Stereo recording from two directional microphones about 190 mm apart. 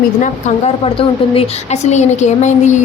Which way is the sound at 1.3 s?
35° left (ahead or behind).